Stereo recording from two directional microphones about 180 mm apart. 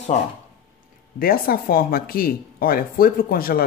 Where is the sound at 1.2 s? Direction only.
55° left (ahead or behind).